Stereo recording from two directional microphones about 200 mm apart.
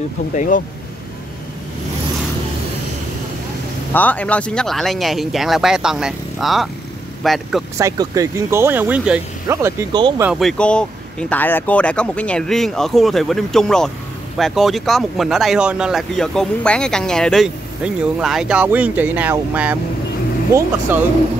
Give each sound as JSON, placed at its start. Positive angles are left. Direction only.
{"t": 0.3, "sound": "speech", "side_deg": 40}
{"t": 3.9, "sound": "speech", "side_deg": 10}
{"t": 7.7, "sound": "speech", "side_deg": -15}
{"t": 10.4, "sound": "speech", "side_deg": 5}